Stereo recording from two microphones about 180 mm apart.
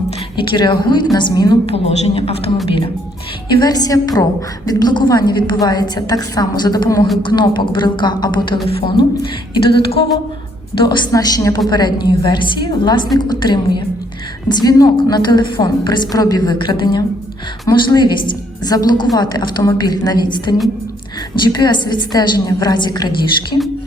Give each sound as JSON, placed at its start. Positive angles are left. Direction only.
{"t": 0.3, "sound": "a woman's voice", "side_deg": 25}
{"t": 9.6, "sound": "a woman's voice", "side_deg": 30}